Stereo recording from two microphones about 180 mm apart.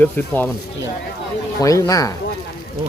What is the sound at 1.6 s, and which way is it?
Speech, 20° left (ahead or behind).